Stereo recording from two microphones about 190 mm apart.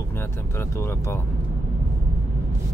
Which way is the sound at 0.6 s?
15° left (ahead or behind).